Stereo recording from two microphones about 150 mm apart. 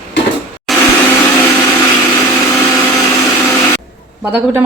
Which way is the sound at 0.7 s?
Centre (ahead or behind).